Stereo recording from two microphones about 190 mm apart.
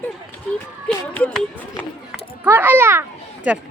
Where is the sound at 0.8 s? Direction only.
5° left (ahead or behind).